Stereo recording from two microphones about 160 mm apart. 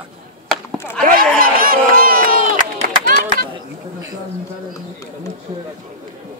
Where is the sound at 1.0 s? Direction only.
60° right (ahead or behind).